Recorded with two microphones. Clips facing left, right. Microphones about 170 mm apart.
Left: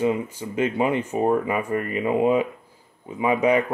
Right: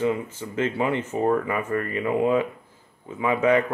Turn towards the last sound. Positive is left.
turn(degrees=15)  # may be behind; listen again after turning